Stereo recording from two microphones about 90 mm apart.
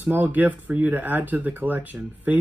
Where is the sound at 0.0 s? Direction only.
20° right (ahead or behind).